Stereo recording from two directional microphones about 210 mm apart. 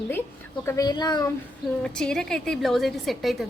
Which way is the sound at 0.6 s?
15° left (ahead or behind).